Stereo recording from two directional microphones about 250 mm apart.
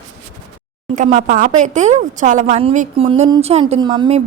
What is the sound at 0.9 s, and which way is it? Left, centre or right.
Speech, right.